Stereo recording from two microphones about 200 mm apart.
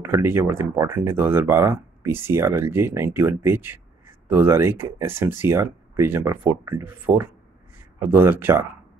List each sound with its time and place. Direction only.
0.1 s speech: 10° right (ahead or behind)